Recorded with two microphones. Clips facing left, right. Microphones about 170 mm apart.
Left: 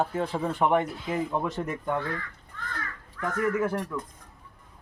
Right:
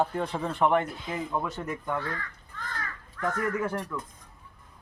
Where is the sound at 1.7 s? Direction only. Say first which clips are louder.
Left 2 dB; 25° left (ahead or behind).